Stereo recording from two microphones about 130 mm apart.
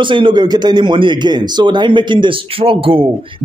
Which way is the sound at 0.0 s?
40° right (ahead or behind).